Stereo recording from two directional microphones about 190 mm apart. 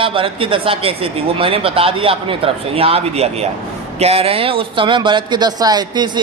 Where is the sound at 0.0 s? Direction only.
30° right (ahead or behind).